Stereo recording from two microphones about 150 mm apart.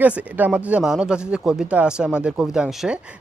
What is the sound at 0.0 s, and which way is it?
Speech, 10° right (ahead or behind).